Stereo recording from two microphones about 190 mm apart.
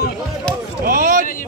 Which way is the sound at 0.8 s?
45° right (ahead or behind).